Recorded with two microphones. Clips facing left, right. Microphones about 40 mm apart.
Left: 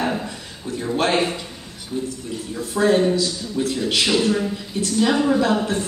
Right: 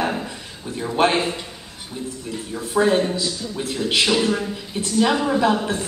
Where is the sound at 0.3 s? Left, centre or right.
Centre.